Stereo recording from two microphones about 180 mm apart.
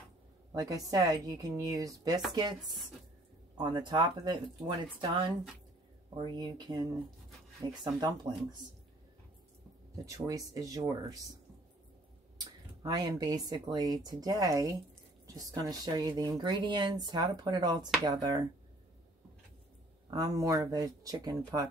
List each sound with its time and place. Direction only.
0.5 s speech: 20° right (ahead or behind)
3.5 s speech: 25° right (ahead or behind)
6.1 s speech: 25° right (ahead or behind)
10.0 s speech: 20° right (ahead or behind)
12.8 s speech: 20° right (ahead or behind)
20.1 s speech: 20° right (ahead or behind)